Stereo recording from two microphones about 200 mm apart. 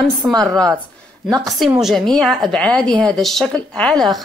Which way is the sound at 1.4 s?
Centre (ahead or behind).